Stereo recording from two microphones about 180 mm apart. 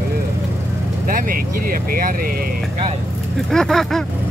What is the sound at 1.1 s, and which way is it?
Speech, 50° right (ahead or behind).